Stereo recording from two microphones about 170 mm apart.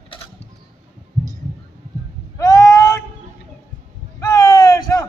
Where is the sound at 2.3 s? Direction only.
20° left (ahead or behind).